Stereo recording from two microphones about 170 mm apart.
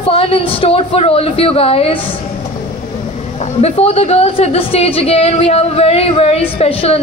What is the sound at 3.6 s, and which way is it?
A woman's voice, 35° left (ahead or behind).